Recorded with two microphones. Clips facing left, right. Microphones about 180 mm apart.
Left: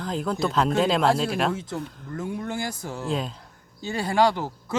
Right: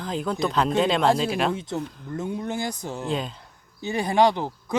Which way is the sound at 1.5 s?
20° right (ahead or behind).